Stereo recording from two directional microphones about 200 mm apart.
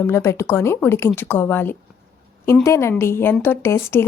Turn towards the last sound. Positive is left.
turn(degrees=15)  # may be behind; listen again after turning